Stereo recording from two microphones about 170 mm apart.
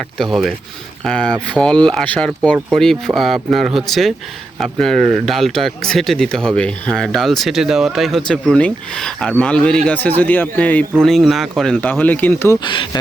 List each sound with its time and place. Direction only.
0.2 s speech: centre (ahead or behind)
12.5 s speech: 30° left (ahead or behind)